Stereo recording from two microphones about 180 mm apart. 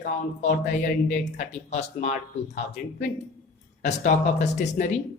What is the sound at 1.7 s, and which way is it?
Speech, 40° left (ahead or behind).